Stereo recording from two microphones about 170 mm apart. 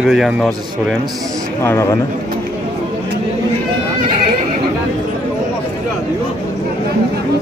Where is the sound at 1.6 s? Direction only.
15° left (ahead or behind).